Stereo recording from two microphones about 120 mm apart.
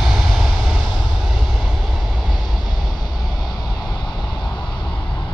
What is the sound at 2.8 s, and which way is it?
Vehicle, 35° left (ahead or behind).